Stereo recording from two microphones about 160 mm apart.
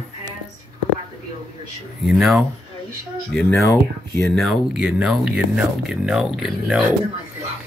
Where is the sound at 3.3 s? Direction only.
10° left (ahead or behind).